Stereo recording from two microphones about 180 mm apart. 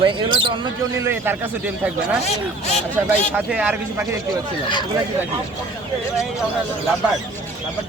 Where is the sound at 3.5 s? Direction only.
5° right (ahead or behind).